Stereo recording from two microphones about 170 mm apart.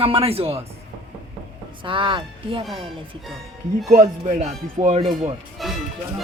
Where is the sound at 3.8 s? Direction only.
45° right (ahead or behind).